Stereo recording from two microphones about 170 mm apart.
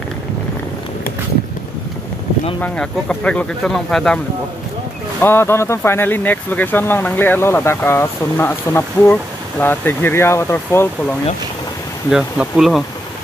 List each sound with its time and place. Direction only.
2.6 s speech: 5° left (ahead or behind)
5.2 s speech: 15° left (ahead or behind)
12.1 s speech: centre (ahead or behind)